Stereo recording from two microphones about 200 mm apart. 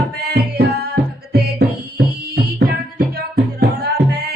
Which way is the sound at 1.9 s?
50° right (ahead or behind).